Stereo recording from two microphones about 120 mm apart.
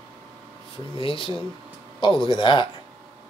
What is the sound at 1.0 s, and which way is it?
Speech, 45° left (ahead or behind).